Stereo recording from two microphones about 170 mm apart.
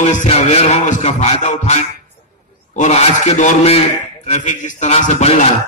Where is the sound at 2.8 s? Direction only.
45° left (ahead or behind).